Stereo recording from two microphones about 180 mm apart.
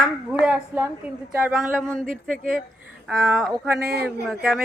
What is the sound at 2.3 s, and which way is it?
Speech, 50° right (ahead or behind).